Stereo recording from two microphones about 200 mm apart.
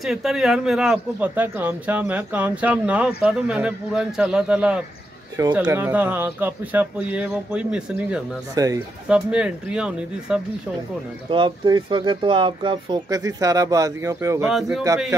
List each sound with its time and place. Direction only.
0.0 s a man's voice: centre (ahead or behind)
8.5 s speech: 15° right (ahead or behind)
9.1 s a man's voice: 5° right (ahead or behind)
11.2 s speech: 25° right (ahead or behind)
14.5 s a man's voice: centre (ahead or behind)